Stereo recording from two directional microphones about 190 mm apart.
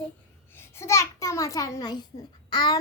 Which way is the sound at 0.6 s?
15° left (ahead or behind).